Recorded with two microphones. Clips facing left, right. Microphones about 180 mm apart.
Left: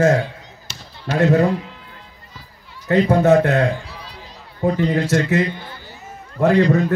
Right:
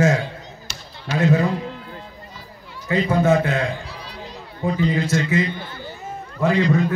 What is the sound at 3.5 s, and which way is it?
A man's voice, 45° left (ahead or behind).